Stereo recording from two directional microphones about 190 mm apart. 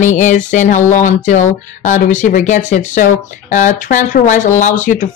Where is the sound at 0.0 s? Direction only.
40° left (ahead or behind).